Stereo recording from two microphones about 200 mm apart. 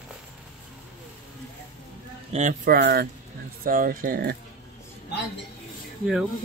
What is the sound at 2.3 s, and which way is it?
Speech, 40° right (ahead or behind).